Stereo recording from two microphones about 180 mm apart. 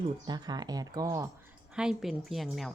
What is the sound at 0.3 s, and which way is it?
Speech, 25° right (ahead or behind).